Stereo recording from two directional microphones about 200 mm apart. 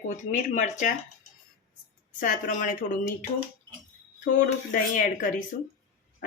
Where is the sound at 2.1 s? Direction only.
40° left (ahead or behind).